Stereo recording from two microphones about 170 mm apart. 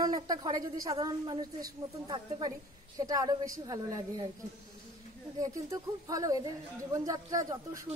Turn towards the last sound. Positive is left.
turn(degrees=-20)  # may be behind; listen again after turning